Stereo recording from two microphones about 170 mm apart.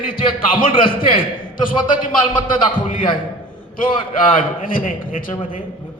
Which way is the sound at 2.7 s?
55° left (ahead or behind).